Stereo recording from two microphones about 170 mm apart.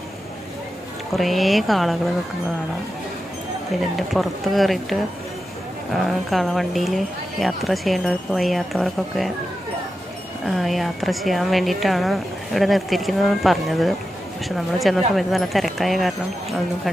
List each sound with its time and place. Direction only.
1.1 s speech: centre (ahead or behind)
4.1 s speech: centre (ahead or behind)
5.9 s speech: centre (ahead or behind)
10.4 s speech: centre (ahead or behind)